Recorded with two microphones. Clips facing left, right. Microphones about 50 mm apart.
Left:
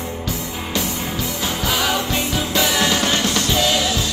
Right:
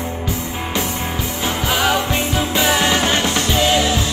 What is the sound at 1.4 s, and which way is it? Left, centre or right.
Music, right.